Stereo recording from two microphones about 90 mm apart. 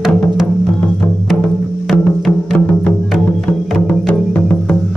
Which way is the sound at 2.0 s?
15° left (ahead or behind).